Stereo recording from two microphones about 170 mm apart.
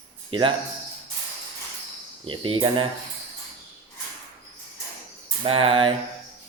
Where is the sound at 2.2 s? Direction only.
30° right (ahead or behind).